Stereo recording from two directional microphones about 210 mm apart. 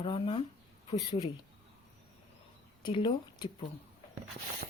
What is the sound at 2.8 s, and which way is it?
Speech, 25° left (ahead or behind).